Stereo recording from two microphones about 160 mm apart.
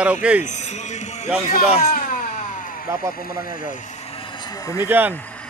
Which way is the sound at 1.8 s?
50° left (ahead or behind).